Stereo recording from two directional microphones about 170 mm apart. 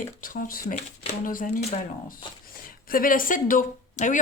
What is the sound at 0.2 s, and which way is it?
Speech, 55° left (ahead or behind).